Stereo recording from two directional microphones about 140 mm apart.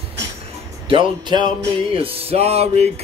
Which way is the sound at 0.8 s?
35° right (ahead or behind).